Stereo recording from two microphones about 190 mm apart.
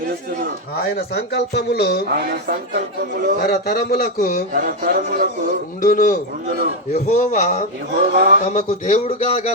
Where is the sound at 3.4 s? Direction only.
55° left (ahead or behind).